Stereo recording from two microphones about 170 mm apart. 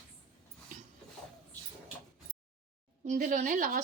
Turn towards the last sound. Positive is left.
turn(degrees=-50)  # may be behind; listen again after turning